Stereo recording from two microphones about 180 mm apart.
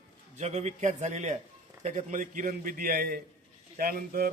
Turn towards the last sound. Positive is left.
turn(degrees=-55)  # may be behind; listen again after turning